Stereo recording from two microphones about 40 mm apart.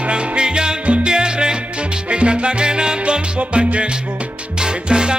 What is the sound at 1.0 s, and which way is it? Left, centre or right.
Salsa music, right.